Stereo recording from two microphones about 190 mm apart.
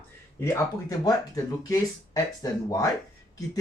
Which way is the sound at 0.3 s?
15° left (ahead or behind).